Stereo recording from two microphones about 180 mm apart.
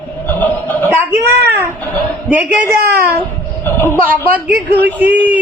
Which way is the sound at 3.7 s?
15° left (ahead or behind).